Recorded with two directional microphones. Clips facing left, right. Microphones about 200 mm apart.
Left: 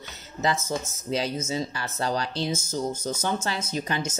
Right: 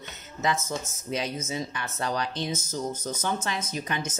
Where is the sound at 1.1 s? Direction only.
30° left (ahead or behind).